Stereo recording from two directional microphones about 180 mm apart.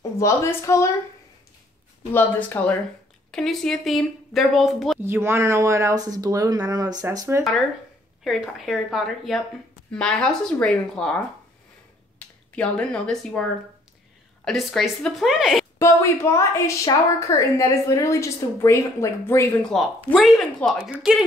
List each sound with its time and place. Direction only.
0.2 s a woman's voice: 15° left (ahead or behind)
2.1 s a woman's voice: 10° left (ahead or behind)
5.0 s speech: 15° right (ahead or behind)
8.2 s speech: centre (ahead or behind)
12.5 s speech: 5° left (ahead or behind)
15.8 s a woman's voice: 15° left (ahead or behind)
19.7 s speech: centre (ahead or behind)